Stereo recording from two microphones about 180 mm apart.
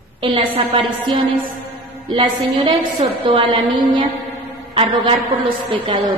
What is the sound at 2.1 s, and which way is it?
A woman's voice, 30° right (ahead or behind).